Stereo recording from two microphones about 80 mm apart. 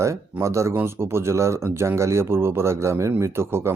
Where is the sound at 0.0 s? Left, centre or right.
Right.